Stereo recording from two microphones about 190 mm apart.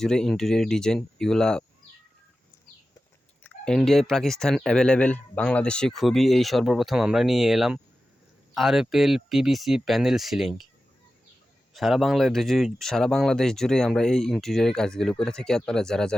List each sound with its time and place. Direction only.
0.0 s speech: 5° left (ahead or behind)
3.4 s speech: 5° left (ahead or behind)
11.7 s speech: centre (ahead or behind)